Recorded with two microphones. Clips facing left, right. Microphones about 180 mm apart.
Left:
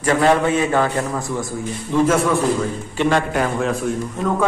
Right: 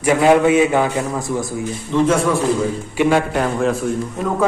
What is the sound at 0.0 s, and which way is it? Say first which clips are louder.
A man's voice: right 3 dB; 10° right (ahead or behind).